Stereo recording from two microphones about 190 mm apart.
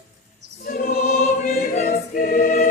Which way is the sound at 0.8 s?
50° left (ahead or behind).